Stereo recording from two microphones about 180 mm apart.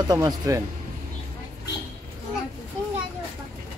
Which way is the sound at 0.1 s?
20° right (ahead or behind).